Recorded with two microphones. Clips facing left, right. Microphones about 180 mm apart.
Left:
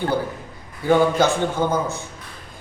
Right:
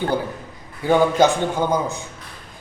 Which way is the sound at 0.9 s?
15° right (ahead or behind).